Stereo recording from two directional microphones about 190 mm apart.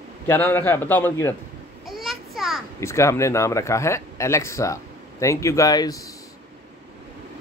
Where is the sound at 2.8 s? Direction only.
15° left (ahead or behind).